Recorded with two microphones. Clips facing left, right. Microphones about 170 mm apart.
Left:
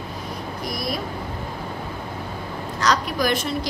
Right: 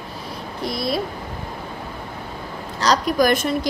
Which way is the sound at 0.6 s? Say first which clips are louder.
Right 5 dB; 25° right (ahead or behind).